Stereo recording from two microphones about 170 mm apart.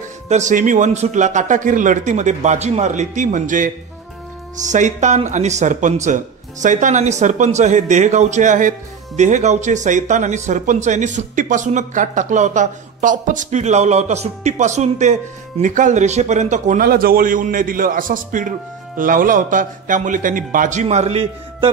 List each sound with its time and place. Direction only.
0.3 s speech: 45° right (ahead or behind)
20.8 s a man's voice: 40° right (ahead or behind)